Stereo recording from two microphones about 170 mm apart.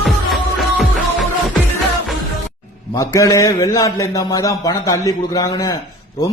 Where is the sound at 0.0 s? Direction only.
Centre (ahead or behind).